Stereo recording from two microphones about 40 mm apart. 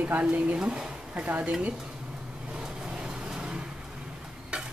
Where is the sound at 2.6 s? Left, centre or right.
Right.